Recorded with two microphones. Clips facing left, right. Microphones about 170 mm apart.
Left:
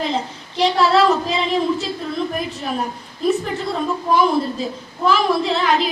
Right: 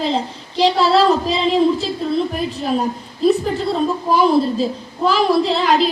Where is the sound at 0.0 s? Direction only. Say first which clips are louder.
Right 3 dB; 30° right (ahead or behind).